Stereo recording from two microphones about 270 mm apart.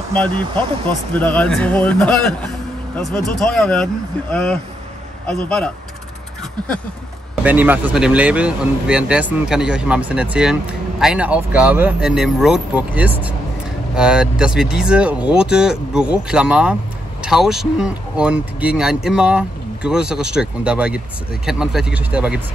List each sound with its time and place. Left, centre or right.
0.8 s speech: centre
3.5 s speech: centre
7.4 s speech: centre